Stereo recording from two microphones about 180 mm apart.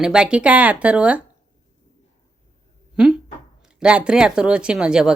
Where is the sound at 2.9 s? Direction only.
5° right (ahead or behind).